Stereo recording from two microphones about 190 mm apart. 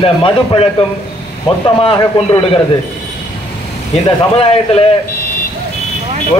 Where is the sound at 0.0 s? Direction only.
30° left (ahead or behind).